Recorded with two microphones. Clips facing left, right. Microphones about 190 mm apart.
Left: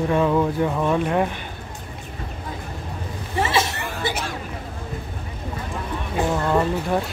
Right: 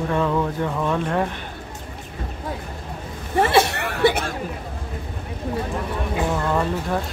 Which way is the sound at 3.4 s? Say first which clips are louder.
Right 5 dB; 60° right (ahead or behind).